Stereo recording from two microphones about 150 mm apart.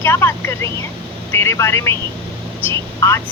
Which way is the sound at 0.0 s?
15° left (ahead or behind).